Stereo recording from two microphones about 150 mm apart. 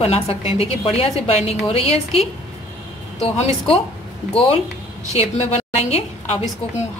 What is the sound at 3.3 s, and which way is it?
A woman's voice, 40° left (ahead or behind).